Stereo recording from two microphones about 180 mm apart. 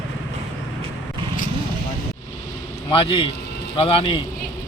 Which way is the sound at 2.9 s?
30° left (ahead or behind).